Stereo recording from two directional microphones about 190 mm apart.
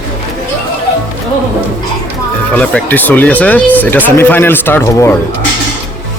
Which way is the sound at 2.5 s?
10° left (ahead or behind).